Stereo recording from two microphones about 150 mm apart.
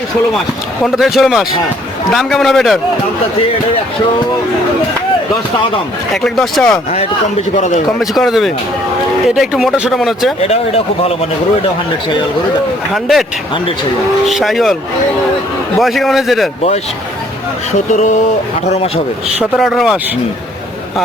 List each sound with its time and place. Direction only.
0.8 s speech: centre (ahead or behind)
6.2 s speech: centre (ahead or behind)
6.9 s speech: 50° left (ahead or behind)
7.9 s speech: centre (ahead or behind)
10.4 s speech: 40° left (ahead or behind)
12.9 s speech: centre (ahead or behind)
14.3 s speech: centre (ahead or behind)
15.8 s speech: centre (ahead or behind)
19.4 s speech: centre (ahead or behind)